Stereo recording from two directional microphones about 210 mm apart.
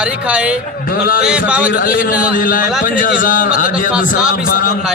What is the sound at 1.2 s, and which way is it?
Speech, 5° right (ahead or behind).